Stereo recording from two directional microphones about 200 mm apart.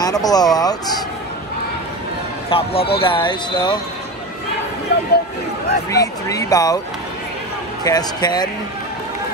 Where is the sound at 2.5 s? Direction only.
30° left (ahead or behind).